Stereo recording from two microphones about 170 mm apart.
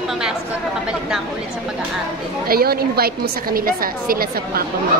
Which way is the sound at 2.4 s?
65° right (ahead or behind).